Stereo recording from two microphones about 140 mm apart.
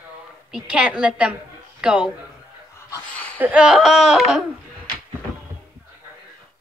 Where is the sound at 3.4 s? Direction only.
5° right (ahead or behind).